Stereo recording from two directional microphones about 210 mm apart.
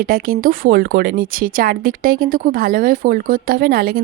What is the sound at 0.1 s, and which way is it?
Speech, 45° right (ahead or behind).